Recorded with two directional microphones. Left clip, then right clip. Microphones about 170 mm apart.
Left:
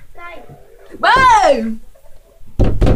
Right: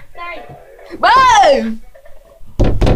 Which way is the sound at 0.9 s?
45° left (ahead or behind).